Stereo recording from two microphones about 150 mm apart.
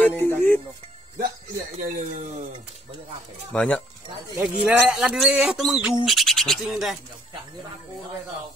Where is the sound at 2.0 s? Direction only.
55° right (ahead or behind).